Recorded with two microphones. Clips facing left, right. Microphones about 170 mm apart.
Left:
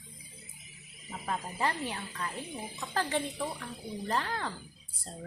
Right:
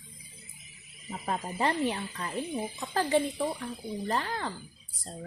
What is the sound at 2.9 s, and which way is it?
A woman's voice, 10° right (ahead or behind).